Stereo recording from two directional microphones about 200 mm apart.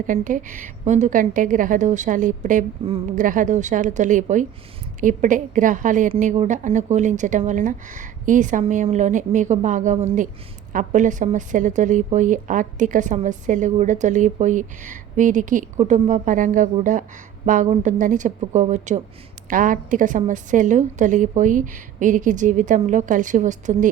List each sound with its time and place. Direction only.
0.1 s a woman's voice: 40° right (ahead or behind)